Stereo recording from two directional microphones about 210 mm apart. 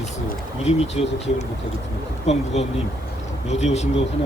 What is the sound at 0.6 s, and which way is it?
Speech, 30° left (ahead or behind).